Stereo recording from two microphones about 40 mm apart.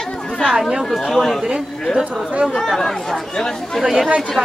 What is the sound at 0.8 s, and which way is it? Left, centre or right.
Speech, centre.